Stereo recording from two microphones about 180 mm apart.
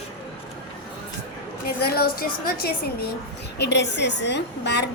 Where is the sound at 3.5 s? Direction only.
70° left (ahead or behind).